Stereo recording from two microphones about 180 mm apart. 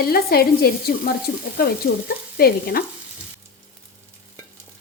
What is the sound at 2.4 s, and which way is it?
Speech, 60° left (ahead or behind).